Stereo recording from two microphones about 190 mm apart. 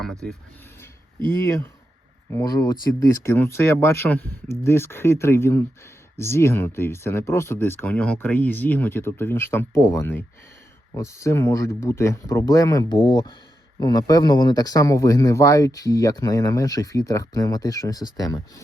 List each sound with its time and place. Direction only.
0.0 s speech: centre (ahead or behind)
1.4 s speech: 15° left (ahead or behind)